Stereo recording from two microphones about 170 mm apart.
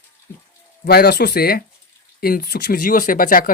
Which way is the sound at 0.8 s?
65° left (ahead or behind).